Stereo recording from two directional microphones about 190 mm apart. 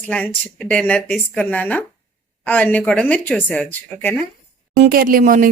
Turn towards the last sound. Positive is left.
turn(degrees=-45)  # may be behind; listen again after turning